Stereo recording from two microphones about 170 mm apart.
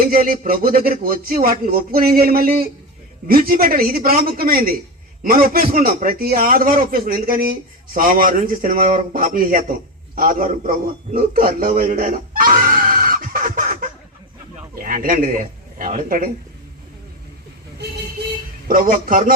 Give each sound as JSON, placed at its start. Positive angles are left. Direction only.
{"t": 0.0, "sound": "music", "side_deg": -55}
{"t": 10.2, "sound": "a man's voice", "side_deg": -55}
{"t": 18.7, "sound": "a man's voice", "side_deg": -55}